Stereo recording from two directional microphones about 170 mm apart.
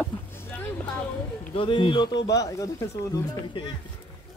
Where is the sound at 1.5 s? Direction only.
30° left (ahead or behind).